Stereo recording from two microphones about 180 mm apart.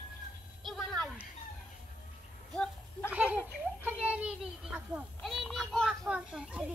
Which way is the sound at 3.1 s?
10° right (ahead or behind).